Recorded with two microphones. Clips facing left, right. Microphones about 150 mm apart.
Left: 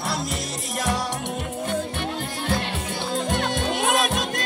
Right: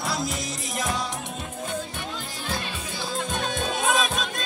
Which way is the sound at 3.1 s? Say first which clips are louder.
Left 4 dB; 75° left (ahead or behind).